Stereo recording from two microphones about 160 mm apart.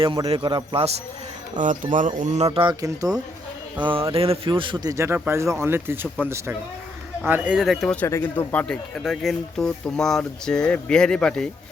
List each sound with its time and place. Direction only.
0.3 s a man's voice: 30° right (ahead or behind)
1.5 s speech: 55° right (ahead or behind); by 2.7 s 35° right (ahead or behind)
2.8 s a man's voice: 20° right (ahead or behind); by 7.9 s centre (ahead or behind)
8.0 s speech: 15° left (ahead or behind)